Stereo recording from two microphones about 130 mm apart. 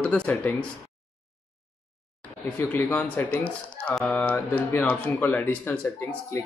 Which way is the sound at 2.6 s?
15° left (ahead or behind).